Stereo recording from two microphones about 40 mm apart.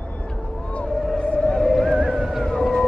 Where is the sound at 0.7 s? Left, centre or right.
Left.